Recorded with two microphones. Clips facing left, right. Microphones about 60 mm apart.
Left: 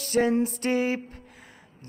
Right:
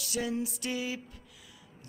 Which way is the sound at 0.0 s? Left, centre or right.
Left.